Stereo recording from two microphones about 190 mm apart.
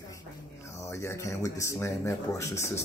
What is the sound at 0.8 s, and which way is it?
Speech, 15° left (ahead or behind).